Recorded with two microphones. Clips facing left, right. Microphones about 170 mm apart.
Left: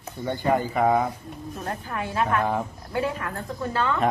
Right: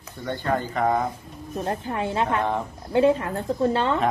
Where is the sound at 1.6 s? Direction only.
25° right (ahead or behind).